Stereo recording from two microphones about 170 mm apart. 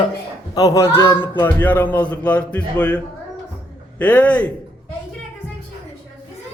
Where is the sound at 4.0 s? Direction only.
10° left (ahead or behind).